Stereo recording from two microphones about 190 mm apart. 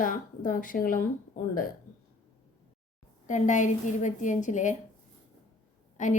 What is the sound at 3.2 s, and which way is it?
A woman's voice, 40° left (ahead or behind).